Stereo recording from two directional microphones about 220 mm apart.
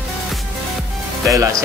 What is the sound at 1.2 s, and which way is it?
Speech, 15° right (ahead or behind).